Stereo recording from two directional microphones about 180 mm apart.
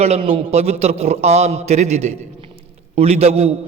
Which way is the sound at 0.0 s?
35° right (ahead or behind).